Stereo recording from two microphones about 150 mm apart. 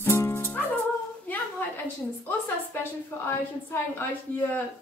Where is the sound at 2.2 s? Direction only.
15° left (ahead or behind).